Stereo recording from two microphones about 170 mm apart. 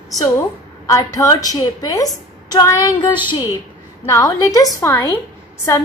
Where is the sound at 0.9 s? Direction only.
20° left (ahead or behind).